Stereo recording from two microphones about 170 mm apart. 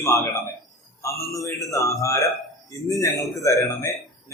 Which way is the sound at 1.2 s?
20° left (ahead or behind).